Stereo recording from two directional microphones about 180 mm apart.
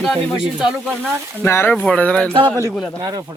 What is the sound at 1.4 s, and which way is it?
Speech, 10° left (ahead or behind).